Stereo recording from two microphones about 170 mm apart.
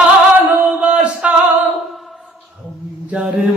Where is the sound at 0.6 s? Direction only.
5° right (ahead or behind).